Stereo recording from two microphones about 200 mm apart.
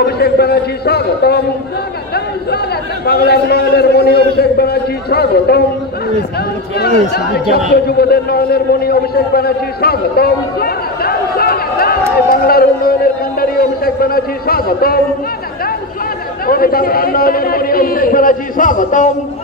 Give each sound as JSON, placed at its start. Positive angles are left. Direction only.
{"t": 0.0, "sound": "a man's voice", "side_deg": 55}
{"t": 3.1, "sound": "a man's voice", "side_deg": 55}
{"t": 7.3, "sound": "a man's voice", "side_deg": 55}
{"t": 16.4, "sound": "a man's voice", "side_deg": 45}